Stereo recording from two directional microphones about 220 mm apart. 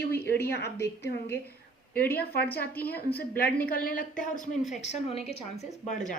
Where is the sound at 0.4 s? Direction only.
10° left (ahead or behind).